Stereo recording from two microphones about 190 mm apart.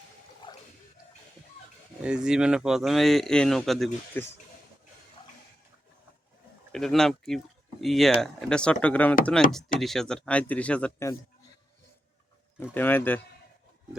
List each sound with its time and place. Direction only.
0.4 s a sound: 25° left (ahead or behind)
2.0 s speech: 5° right (ahead or behind)
6.7 s speech: centre (ahead or behind)
12.7 s speech: 10° left (ahead or behind)